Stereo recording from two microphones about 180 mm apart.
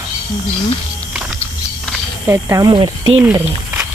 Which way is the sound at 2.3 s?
20° right (ahead or behind).